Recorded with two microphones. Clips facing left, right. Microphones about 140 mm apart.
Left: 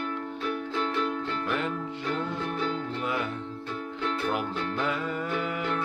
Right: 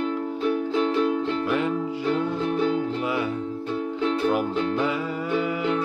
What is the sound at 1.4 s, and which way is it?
Music, 10° right (ahead or behind).